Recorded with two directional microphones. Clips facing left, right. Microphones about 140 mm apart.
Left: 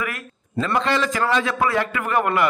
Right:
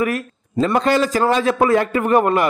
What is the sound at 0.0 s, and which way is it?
A man's voice, 35° right (ahead or behind).